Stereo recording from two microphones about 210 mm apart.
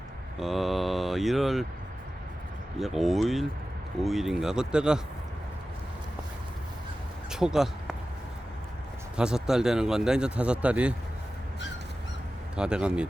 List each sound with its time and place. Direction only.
0.3 s speech: centre (ahead or behind)
2.7 s speech: centre (ahead or behind)
7.3 s speech: 5° right (ahead or behind)
9.1 s speech: 5° right (ahead or behind)
12.5 s speech: 5° right (ahead or behind)